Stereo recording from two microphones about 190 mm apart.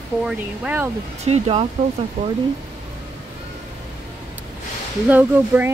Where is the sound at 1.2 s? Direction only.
35° right (ahead or behind).